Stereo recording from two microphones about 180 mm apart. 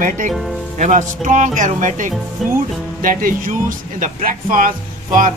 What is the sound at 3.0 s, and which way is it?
Speech, 50° right (ahead or behind).